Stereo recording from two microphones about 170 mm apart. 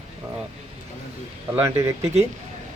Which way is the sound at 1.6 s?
15° right (ahead or behind).